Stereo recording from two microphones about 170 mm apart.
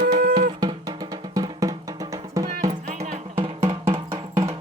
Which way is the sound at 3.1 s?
35° right (ahead or behind).